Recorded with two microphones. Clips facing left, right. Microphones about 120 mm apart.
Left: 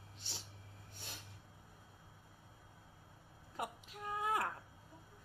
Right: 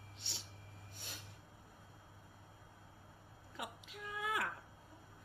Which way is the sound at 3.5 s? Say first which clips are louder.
Left 4 dB; 40° left (ahead or behind).